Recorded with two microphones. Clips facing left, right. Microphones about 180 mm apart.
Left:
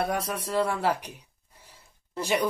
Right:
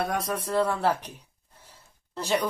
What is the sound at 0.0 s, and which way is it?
Speech, 5° left (ahead or behind).